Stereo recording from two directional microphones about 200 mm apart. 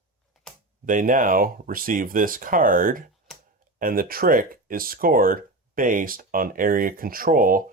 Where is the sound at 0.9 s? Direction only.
40° right (ahead or behind).